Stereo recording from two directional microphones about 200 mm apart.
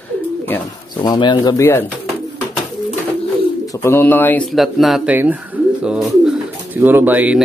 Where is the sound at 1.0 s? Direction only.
25° left (ahead or behind).